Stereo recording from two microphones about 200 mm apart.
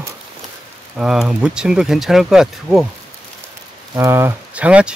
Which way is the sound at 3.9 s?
10° right (ahead or behind).